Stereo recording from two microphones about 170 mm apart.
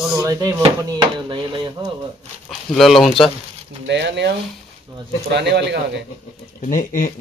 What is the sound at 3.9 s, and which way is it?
Speech, 90° right.